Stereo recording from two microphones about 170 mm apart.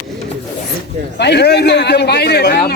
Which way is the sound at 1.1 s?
80° left.